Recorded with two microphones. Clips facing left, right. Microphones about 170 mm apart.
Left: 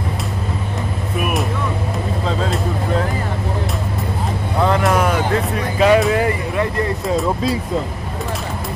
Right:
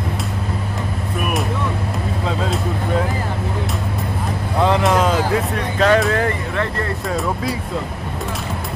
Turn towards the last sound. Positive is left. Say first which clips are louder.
# left 3 dB
turn(degrees=15)  # may be behind; listen again after turning